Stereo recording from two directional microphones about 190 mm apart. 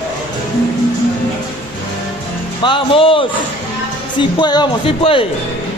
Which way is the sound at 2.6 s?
25° left (ahead or behind).